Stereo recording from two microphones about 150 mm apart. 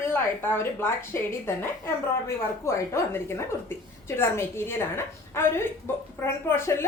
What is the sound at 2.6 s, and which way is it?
Speech, 20° left (ahead or behind).